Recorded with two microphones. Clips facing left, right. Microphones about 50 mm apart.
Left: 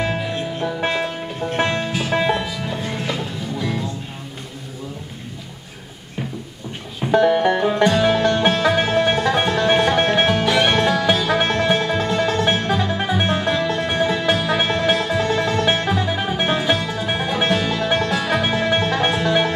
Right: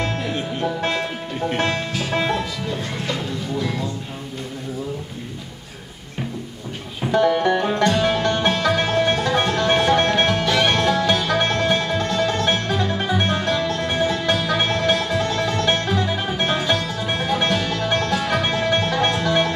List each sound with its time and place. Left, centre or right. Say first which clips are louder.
0.0 s music: left 1 dB; centre
7.1 s music: left 2 dB; centre